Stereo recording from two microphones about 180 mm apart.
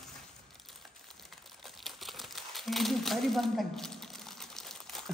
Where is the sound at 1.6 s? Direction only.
Centre (ahead or behind).